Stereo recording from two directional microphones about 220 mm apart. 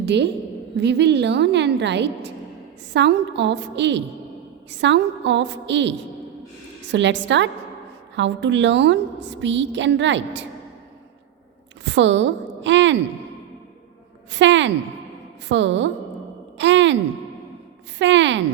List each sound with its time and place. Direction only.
0.0 s a woman's voice: 50° right (ahead or behind)
11.9 s a woman's voice: 55° right (ahead or behind)
14.3 s a woman's voice: 55° right (ahead or behind)
18.0 s a woman's voice: 55° right (ahead or behind)